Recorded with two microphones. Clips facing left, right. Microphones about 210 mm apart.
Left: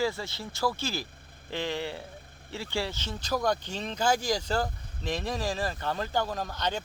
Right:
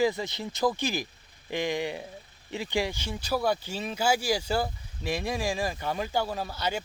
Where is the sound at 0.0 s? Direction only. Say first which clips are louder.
Right 4 dB; 15° right (ahead or behind).